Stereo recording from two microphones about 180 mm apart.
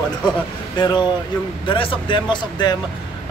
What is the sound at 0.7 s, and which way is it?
Speech, 25° left (ahead or behind).